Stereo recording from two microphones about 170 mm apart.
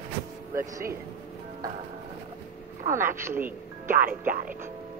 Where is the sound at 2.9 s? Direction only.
15° right (ahead or behind).